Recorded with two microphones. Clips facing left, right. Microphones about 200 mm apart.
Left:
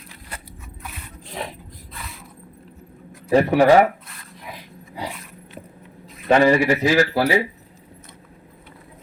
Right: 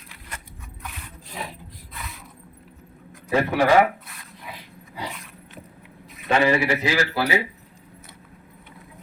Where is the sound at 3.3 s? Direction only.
35° left (ahead or behind).